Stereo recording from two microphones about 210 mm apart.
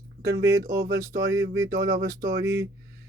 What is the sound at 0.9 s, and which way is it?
Speech, 15° right (ahead or behind).